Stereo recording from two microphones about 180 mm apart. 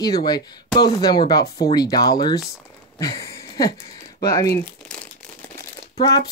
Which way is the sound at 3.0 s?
20° left (ahead or behind).